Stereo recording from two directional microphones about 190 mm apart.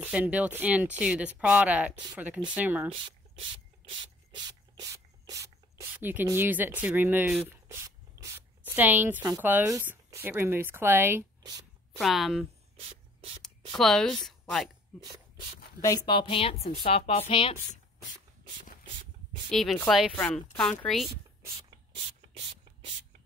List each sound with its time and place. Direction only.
0.0 s speech: 10° right (ahead or behind)
3.9 s rub: 25° right (ahead or behind)
8.2 s a sound: 20° right (ahead or behind)
8.7 s speech: 10° right (ahead or behind)
12.0 s speech: centre (ahead or behind)
12.7 s writing: 30° right (ahead or behind)
13.4 s speech: centre (ahead or behind)
14.9 s rub: 5° left (ahead or behind)
15.8 s a woman's voice: 20° left (ahead or behind)
19.5 s speech: centre (ahead or behind)
21.6 s ratchet: 30° right (ahead or behind)